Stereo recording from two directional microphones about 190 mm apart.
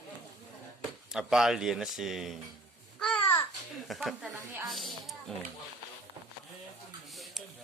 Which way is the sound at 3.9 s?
Centre (ahead or behind).